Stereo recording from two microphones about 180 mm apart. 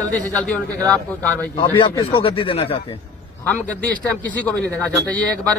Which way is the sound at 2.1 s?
30° left (ahead or behind).